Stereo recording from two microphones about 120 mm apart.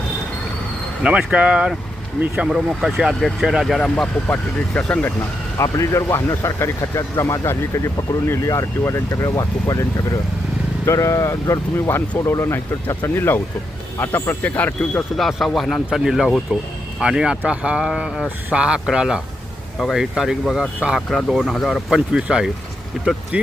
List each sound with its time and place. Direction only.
1.0 s speech: 10° right (ahead or behind); by 5.1 s 10° left (ahead or behind)
5.5 s speech: 25° left (ahead or behind)
10.8 s speech: 25° left (ahead or behind)
15.1 s speech: centre (ahead or behind)